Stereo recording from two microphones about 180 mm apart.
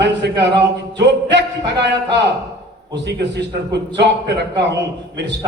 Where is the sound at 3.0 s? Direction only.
70° right (ahead or behind).